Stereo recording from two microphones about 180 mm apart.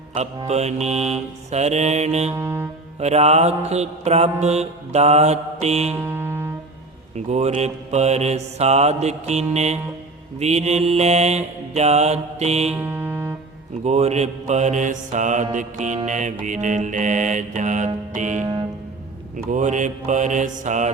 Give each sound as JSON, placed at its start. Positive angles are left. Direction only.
{"t": 0.1, "sound": "mantra", "side_deg": -35}
{"t": 2.3, "sound": "music", "side_deg": -15}
{"t": 3.0, "sound": "mantra", "side_deg": -35}
{"t": 5.9, "sound": "music", "side_deg": -10}
{"t": 7.3, "sound": "mantra", "side_deg": -35}
{"t": 12.7, "sound": "music", "side_deg": -10}
{"t": 13.8, "sound": "mantra", "side_deg": -35}
{"t": 19.5, "sound": "mantra", "side_deg": -40}